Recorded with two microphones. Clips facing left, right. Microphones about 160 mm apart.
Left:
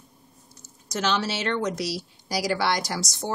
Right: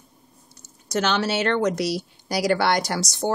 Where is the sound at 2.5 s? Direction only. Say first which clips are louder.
Right 4 dB; 60° right (ahead or behind).